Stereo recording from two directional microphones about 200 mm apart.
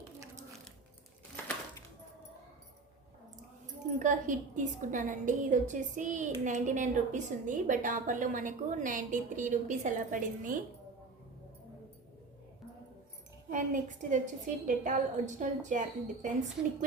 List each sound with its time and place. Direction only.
4.0 s a woman's voice: 40° right (ahead or behind)
13.5 s a woman's voice: 40° right (ahead or behind)